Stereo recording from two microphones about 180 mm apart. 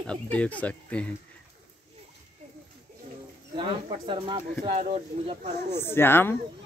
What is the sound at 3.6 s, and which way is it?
Speech, 25° right (ahead or behind).